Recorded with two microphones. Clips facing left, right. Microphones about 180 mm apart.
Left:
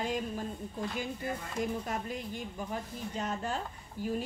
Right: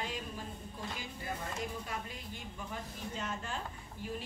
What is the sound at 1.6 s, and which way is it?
A woman's voice, 45° left (ahead or behind).